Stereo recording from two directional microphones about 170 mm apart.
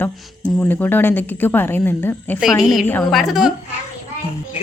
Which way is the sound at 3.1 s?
Centre (ahead or behind).